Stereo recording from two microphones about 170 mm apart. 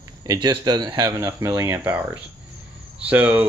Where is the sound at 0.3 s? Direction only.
25° right (ahead or behind).